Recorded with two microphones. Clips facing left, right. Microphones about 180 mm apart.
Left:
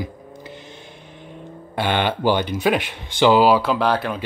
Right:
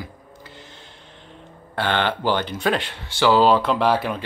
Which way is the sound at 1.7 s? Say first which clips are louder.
Left 1 dB; 15° left (ahead or behind).